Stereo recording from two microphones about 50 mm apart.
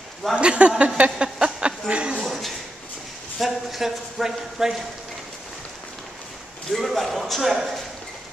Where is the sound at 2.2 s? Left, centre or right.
Centre.